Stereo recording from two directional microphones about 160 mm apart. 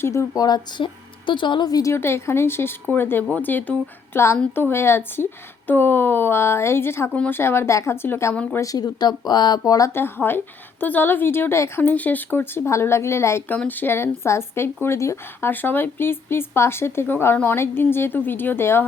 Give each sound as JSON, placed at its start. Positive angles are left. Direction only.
{"t": 0.0, "sound": "speech", "side_deg": 15}